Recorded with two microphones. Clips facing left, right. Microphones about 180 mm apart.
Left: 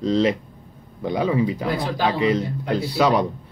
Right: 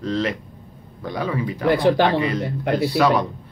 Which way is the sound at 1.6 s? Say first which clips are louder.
Right 6 dB; 65° right (ahead or behind).